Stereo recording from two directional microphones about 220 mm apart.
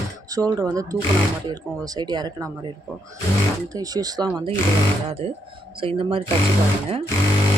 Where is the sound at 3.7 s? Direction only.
15° right (ahead or behind).